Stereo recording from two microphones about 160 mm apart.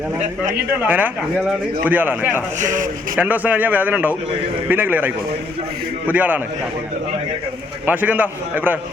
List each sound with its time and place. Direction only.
0.5 s speech: 10° right (ahead or behind)
2.6 s speech: 55° right (ahead or behind)
3.2 s speech: 10° right (ahead or behind)
7.9 s speech: 10° right (ahead or behind)